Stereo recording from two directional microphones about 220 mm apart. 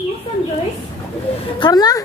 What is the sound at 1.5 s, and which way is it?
Speech, 20° left (ahead or behind).